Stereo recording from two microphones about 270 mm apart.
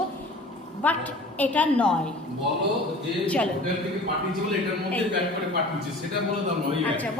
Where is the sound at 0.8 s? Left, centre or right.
Centre.